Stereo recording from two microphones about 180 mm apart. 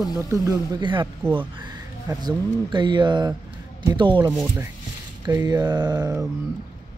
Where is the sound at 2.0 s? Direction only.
25° right (ahead or behind).